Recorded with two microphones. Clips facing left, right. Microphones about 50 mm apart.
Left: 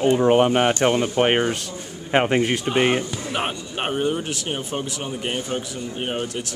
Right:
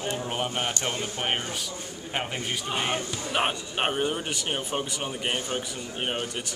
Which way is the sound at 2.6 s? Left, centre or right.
Left.